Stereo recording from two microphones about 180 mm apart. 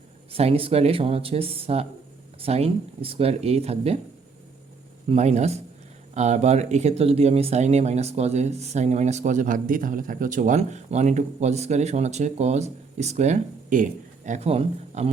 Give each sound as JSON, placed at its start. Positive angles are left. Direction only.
{"t": 0.3, "sound": "speech", "side_deg": -30}
{"t": 5.0, "sound": "speech", "side_deg": -40}